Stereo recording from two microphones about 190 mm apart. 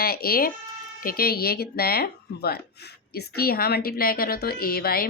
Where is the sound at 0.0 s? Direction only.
55° left (ahead or behind).